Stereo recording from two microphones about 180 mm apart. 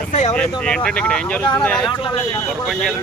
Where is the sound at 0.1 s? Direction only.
40° left (ahead or behind).